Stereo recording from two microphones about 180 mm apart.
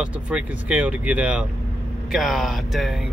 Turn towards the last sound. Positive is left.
turn(degrees=0)  # may be behind; listen again after turning